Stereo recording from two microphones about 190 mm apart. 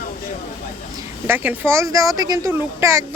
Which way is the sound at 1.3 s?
10° right (ahead or behind).